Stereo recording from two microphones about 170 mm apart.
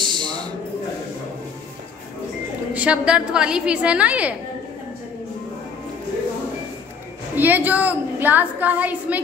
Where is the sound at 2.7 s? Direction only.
5° right (ahead or behind).